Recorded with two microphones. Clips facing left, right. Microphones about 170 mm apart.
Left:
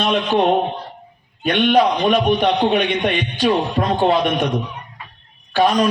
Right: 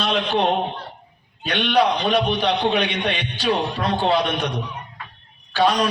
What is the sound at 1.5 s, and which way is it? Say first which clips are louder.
A man's voice: left 4 dB; 65° right (ahead or behind).